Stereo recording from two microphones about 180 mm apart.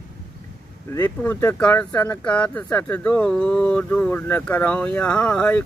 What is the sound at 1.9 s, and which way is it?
Speech, 20° left (ahead or behind).